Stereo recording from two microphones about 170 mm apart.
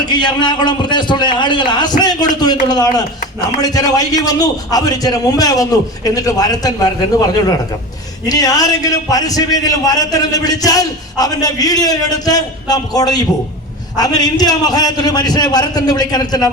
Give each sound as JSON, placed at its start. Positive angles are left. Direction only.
{"t": 0.0, "sound": "a man's voice", "side_deg": 25}
{"t": 8.3, "sound": "a man's voice", "side_deg": 20}